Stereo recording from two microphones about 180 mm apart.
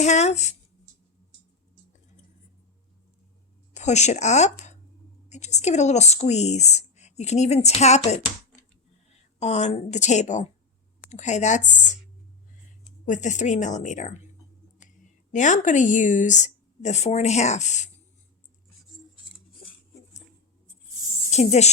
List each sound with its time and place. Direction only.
0.0 s speech: 40° left (ahead or behind)
3.8 s a woman's voice: 40° left (ahead or behind)
13.1 s speech: 40° left (ahead or behind)
15.3 s speech: 45° left (ahead or behind)
21.2 s speech: 35° left (ahead or behind)